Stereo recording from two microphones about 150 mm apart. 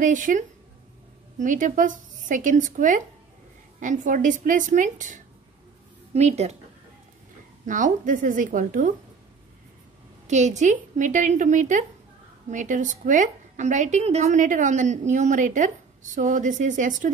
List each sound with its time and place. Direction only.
0.0 s a woman's voice: 60° right (ahead or behind)
6.1 s a woman's voice: 45° right (ahead or behind)
7.6 s a woman's voice: 60° right (ahead or behind)
10.2 s a woman's voice: 50° right (ahead or behind)